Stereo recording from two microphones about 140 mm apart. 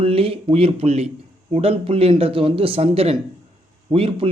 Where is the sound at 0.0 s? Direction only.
45° right (ahead or behind).